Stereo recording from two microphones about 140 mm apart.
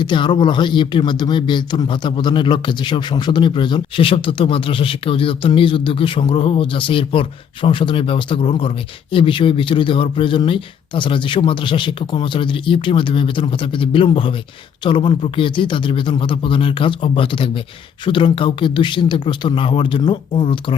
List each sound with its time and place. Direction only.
0.0 s speech: 35° left (ahead or behind)